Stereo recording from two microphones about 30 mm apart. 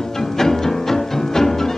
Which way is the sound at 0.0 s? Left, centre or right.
Centre.